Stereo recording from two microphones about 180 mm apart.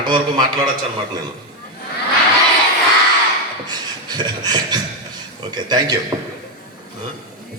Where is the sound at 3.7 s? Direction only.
20° right (ahead or behind).